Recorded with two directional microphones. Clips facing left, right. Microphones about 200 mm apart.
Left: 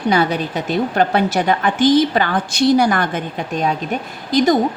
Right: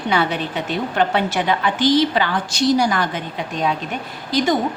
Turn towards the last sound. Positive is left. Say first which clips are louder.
# left 4 dB
turn(degrees=40)  # may be behind; listen again after turning